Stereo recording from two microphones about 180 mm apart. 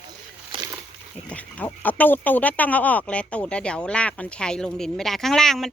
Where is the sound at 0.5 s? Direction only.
30° right (ahead or behind).